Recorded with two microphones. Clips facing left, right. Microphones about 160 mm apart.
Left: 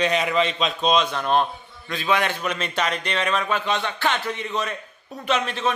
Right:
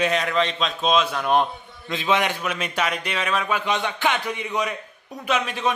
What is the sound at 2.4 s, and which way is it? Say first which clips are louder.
Speech: even; 10° right (ahead or behind).